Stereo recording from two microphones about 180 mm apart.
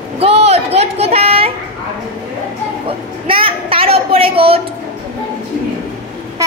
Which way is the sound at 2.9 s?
30° right (ahead or behind).